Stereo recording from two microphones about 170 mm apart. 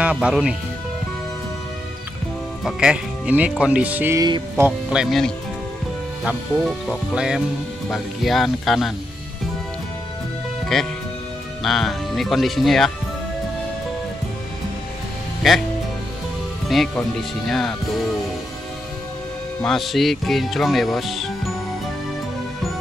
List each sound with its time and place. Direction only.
0.0 s speech: 5° right (ahead or behind)
2.6 s speech: 5° right (ahead or behind)
4.2 s music: 20° right (ahead or behind)
4.6 s speech: 5° right (ahead or behind)
10.7 s speech: centre (ahead or behind)
16.6 s speech: centre (ahead or behind)
19.6 s speech: centre (ahead or behind)